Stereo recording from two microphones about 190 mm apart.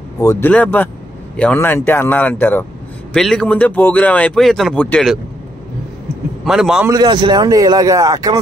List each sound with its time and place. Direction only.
0.2 s speech: 20° left (ahead or behind); by 5.2 s 5° left (ahead or behind)
6.4 s speech: centre (ahead or behind)
6.9 s a man's voice: 25° right (ahead or behind)